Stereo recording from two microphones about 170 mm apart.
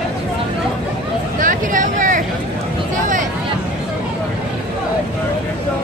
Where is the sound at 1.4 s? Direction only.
50° right (ahead or behind).